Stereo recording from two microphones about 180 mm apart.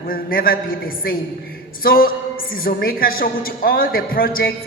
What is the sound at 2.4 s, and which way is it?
A woman's voice, 55° left (ahead or behind).